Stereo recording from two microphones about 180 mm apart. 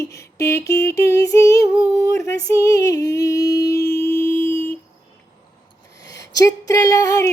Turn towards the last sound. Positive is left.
turn(degrees=15)  # may be behind; listen again after turning